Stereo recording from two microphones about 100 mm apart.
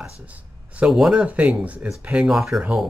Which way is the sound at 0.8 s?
5° right (ahead or behind).